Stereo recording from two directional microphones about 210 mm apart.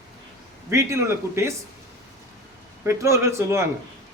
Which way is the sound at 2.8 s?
15° right (ahead or behind).